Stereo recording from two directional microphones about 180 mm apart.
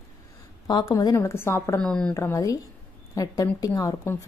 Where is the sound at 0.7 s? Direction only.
25° left (ahead or behind).